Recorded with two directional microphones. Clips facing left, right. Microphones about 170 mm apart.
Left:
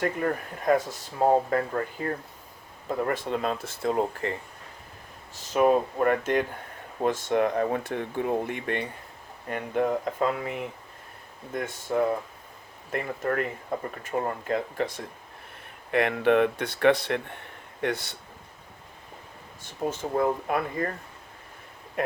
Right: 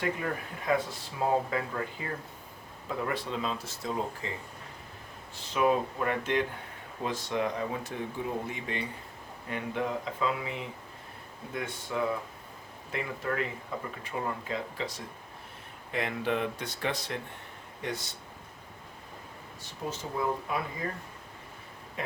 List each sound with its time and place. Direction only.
0.0 s speech: 45° left (ahead or behind)
5.3 s speech: 45° left (ahead or behind)
9.5 s speech: 50° left (ahead or behind)
19.6 s speech: 50° left (ahead or behind)
22.0 s a sound: 55° left (ahead or behind)